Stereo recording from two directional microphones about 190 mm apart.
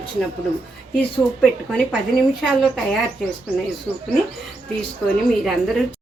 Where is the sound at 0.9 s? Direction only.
5° left (ahead or behind).